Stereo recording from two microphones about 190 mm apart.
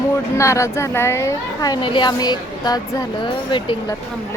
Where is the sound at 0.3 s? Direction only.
15° left (ahead or behind).